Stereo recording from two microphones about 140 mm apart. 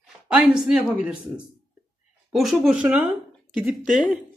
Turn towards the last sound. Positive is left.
turn(degrees=-5)  # may be behind; listen again after turning